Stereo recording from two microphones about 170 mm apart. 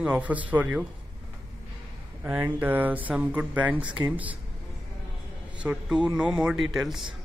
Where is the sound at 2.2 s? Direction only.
10° right (ahead or behind).